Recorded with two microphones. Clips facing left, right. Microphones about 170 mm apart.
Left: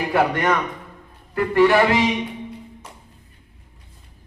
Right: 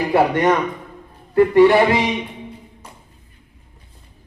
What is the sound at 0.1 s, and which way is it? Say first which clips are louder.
Speech: right 4 dB; 15° right (ahead or behind).